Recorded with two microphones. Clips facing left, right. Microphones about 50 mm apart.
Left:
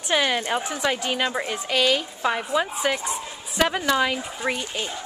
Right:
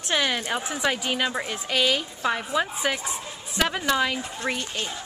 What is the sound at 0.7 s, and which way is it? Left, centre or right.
A woman's voice, centre.